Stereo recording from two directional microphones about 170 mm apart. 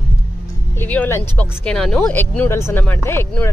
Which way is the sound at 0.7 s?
10° left (ahead or behind).